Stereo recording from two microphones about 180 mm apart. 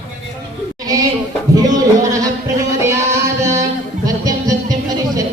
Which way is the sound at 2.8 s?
15° right (ahead or behind).